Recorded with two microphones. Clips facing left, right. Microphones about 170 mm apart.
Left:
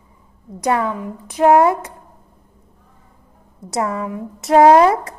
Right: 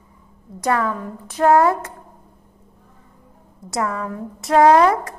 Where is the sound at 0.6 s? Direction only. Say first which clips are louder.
Left 2 dB; 25° left (ahead or behind).